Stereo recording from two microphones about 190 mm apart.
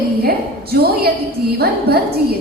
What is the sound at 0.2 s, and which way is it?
A woman's voice, 55° right (ahead or behind).